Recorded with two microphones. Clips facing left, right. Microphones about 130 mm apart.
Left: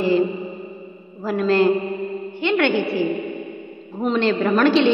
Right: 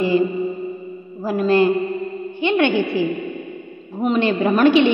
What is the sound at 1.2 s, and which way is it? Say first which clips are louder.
A woman's voice: right 1 dB; 10° right (ahead or behind).